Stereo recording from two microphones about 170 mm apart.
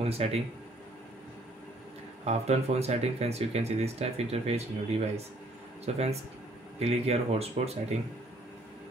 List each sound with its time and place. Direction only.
0.0 s speech: 35° right (ahead or behind)
2.2 s speech: 40° right (ahead or behind)